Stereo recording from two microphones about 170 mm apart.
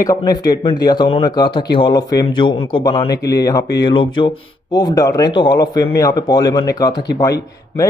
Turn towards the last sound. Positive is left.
turn(degrees=20)  # may be behind; listen again after turning